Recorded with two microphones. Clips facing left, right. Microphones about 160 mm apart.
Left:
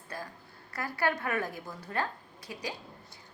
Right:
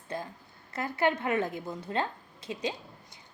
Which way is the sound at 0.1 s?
20° right (ahead or behind).